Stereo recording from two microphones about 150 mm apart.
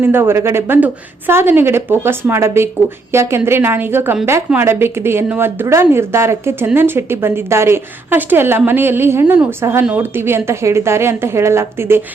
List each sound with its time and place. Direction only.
0.0 s a woman's voice: 15° right (ahead or behind)